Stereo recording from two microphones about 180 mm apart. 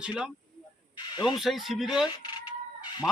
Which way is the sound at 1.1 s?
25° left (ahead or behind).